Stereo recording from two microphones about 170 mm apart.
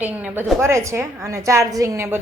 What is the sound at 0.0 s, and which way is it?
Speech, 10° right (ahead or behind).